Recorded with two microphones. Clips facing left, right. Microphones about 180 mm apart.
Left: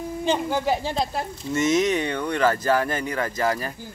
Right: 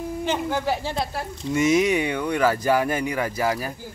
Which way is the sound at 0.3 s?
15° left (ahead or behind).